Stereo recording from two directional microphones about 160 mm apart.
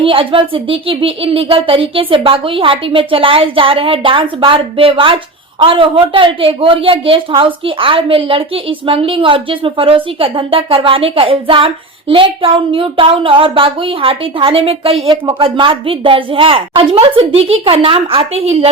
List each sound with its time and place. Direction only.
0.0 s a woman's voice: 35° right (ahead or behind)